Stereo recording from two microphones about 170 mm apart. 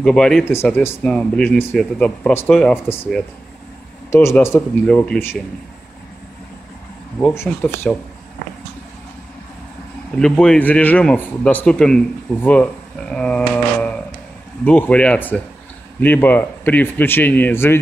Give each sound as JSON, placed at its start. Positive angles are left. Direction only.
{"t": 0.0, "sound": "speech", "side_deg": 5}
{"t": 4.1, "sound": "speech", "side_deg": 15}
{"t": 7.3, "sound": "speech", "side_deg": 15}
{"t": 10.1, "sound": "speech", "side_deg": 5}